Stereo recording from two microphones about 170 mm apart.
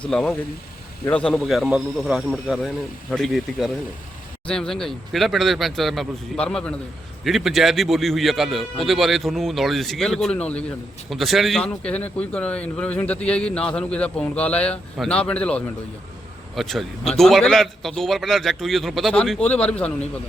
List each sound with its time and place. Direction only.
0.1 s a man's voice: 5° left (ahead or behind)